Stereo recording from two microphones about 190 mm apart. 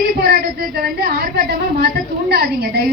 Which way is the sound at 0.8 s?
55° right (ahead or behind).